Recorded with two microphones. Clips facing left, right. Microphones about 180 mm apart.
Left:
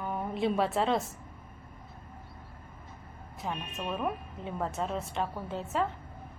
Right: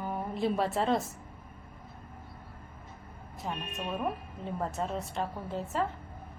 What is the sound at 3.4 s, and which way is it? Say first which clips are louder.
A woman's voice: left 1 dB; centre (ahead or behind).